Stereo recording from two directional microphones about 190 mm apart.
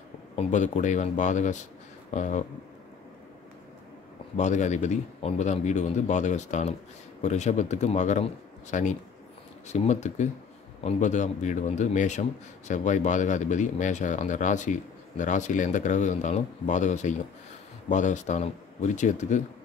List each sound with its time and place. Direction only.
0.4 s a man's voice: 40° left (ahead or behind)
4.4 s a man's voice: 40° left (ahead or behind)